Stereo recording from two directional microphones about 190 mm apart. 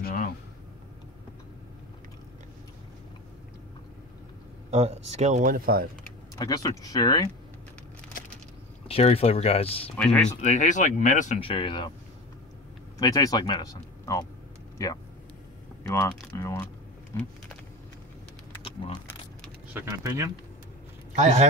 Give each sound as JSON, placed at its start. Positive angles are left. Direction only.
{"t": 0.0, "sound": "a sound", "side_deg": 45}
{"t": 4.6, "sound": "speech", "side_deg": -35}
{"t": 6.3, "sound": "speech", "side_deg": 20}
{"t": 8.2, "sound": "a sound", "side_deg": 45}
{"t": 8.8, "sound": "speech", "side_deg": 30}
{"t": 9.9, "sound": "speech", "side_deg": 5}
{"t": 10.4, "sound": "speech", "side_deg": 40}
{"t": 11.3, "sound": "speech", "side_deg": 30}
{"t": 13.0, "sound": "speech", "side_deg": 20}
{"t": 15.9, "sound": "speech", "side_deg": 15}
{"t": 18.6, "sound": "keys jangling", "side_deg": 30}
{"t": 19.7, "sound": "speech", "side_deg": -15}
{"t": 21.1, "sound": "a man's voice", "side_deg": -40}